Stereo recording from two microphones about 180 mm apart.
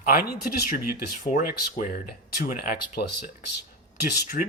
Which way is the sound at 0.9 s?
45° left (ahead or behind).